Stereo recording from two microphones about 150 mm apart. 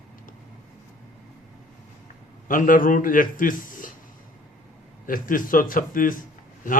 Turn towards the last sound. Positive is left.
turn(degrees=65)  # may be behind; listen again after turning